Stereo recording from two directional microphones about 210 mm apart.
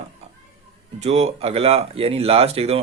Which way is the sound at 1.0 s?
30° right (ahead or behind).